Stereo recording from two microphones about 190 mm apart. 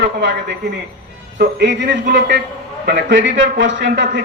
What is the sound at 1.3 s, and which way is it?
A man's voice, 65° right (ahead or behind).